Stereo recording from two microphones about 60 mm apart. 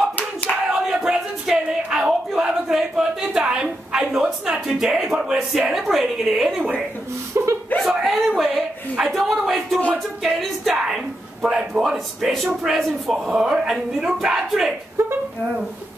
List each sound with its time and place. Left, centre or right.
0.7 s a sound: centre
5.7 s speech: centre
6.6 s speech: right
7.3 s speech: right
7.8 s a sound: centre
10.2 s music: centre
11.4 s a man's voice: centre
11.8 s speech: centre